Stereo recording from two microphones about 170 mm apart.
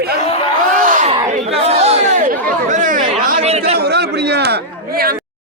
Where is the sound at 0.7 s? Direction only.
50° right (ahead or behind).